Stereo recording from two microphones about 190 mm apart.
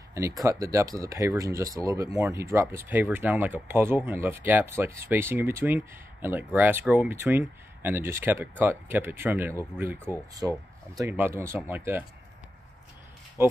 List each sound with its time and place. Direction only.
0.4 s speech: 15° right (ahead or behind)
13.4 s speech: 15° right (ahead or behind)